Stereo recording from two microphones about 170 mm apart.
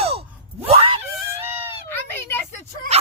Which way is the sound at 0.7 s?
30° right (ahead or behind).